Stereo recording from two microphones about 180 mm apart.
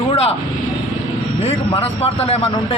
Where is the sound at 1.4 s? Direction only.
30° left (ahead or behind).